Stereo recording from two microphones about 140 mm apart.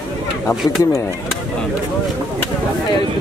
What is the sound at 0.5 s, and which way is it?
Speech, centre (ahead or behind).